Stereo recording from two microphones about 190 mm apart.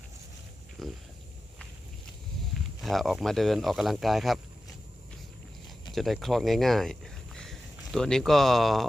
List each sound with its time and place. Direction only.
0.8 s a sound: centre (ahead or behind)
2.8 s speech: centre (ahead or behind)
5.9 s speech: centre (ahead or behind)